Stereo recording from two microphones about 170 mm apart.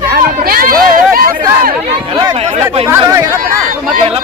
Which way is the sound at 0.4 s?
60° right (ahead or behind).